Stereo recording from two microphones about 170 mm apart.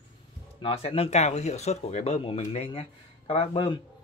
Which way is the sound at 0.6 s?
35° left (ahead or behind).